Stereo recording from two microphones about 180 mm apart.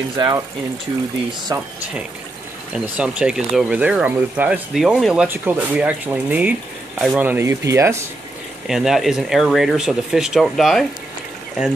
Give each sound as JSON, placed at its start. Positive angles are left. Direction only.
{"t": 0.2, "sound": "speech", "side_deg": -25}
{"t": 2.7, "sound": "speech", "side_deg": -5}
{"t": 8.6, "sound": "speech", "side_deg": 0}